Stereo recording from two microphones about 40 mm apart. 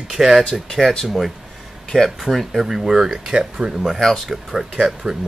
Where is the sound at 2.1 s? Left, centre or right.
Centre.